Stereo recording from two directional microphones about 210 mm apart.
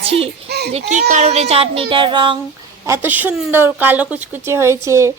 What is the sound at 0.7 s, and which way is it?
Speech, 35° right (ahead or behind).